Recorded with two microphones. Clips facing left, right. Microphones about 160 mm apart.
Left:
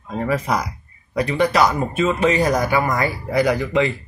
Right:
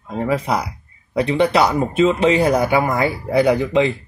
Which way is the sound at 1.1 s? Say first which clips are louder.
Right 2 dB; 25° right (ahead or behind).